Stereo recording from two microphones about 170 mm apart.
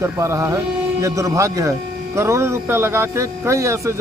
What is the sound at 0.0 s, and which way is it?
Speech, 15° right (ahead or behind).